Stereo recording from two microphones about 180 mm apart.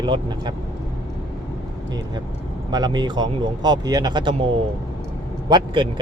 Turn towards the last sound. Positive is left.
turn(degrees=-25)  # may be behind; listen again after turning